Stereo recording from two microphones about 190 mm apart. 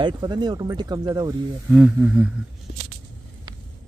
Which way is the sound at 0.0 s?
25° right (ahead or behind).